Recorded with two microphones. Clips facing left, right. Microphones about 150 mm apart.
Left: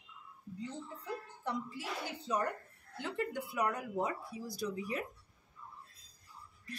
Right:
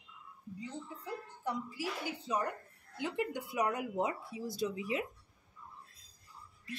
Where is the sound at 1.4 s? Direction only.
10° right (ahead or behind).